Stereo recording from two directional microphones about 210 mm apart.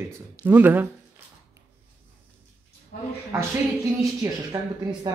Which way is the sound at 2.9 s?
50° left (ahead or behind).